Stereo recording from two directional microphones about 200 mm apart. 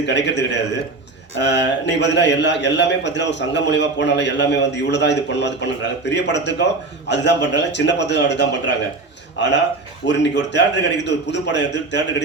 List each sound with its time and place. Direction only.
0.0 s a man's voice: 60° left (ahead or behind)